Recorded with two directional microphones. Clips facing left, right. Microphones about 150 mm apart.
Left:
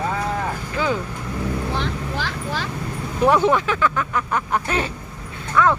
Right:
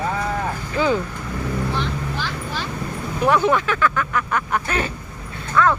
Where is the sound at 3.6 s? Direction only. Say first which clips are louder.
Even; 25° left (ahead or behind).